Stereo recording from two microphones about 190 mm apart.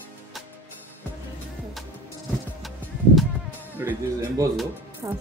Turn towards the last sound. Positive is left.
turn(degrees=-20)  # may be behind; listen again after turning